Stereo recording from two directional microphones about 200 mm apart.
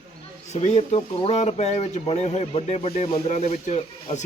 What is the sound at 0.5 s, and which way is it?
Speech, 35° left (ahead or behind).